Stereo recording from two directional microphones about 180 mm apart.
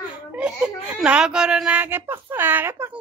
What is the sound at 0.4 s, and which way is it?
Speech, 5° right (ahead or behind).